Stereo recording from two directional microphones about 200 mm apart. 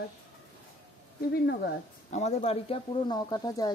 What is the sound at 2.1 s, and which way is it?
Speech, 35° left (ahead or behind).